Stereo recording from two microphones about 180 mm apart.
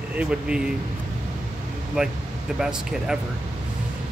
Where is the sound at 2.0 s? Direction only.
5° right (ahead or behind).